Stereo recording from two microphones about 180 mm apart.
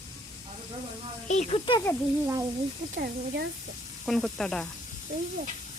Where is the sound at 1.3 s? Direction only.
35° left (ahead or behind).